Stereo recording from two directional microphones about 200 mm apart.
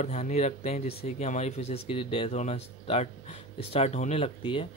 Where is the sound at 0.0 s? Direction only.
35° left (ahead or behind).